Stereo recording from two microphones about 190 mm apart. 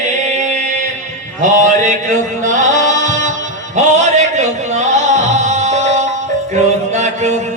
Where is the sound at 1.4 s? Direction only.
40° right (ahead or behind).